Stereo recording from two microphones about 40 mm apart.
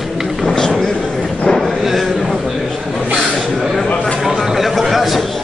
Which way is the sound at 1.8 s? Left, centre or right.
Centre.